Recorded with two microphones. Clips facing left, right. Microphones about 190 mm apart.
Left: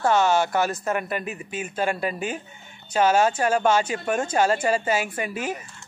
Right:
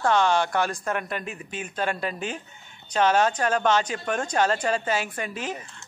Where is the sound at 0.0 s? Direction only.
5° left (ahead or behind).